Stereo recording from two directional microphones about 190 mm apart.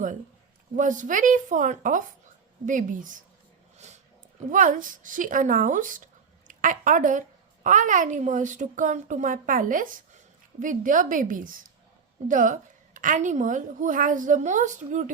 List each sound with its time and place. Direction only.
0.8 s a woman's voice: 40° right (ahead or behind)
3.8 s a sound: 35° right (ahead or behind)
4.5 s a woman's voice: 45° right (ahead or behind)